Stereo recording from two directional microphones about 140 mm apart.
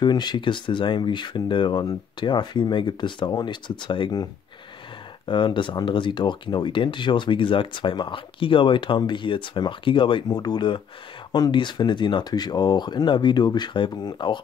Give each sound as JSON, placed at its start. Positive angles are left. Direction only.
{"t": 0.0, "sound": "speech", "side_deg": 30}